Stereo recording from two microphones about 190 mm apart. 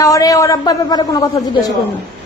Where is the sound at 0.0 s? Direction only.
15° left (ahead or behind).